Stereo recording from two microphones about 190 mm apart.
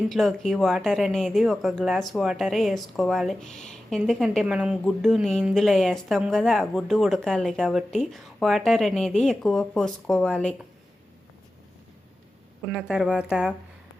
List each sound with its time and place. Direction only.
0.1 s speech: centre (ahead or behind)
12.6 s speech: 5° right (ahead or behind)